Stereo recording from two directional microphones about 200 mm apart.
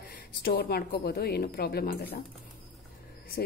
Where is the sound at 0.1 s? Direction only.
50° left (ahead or behind).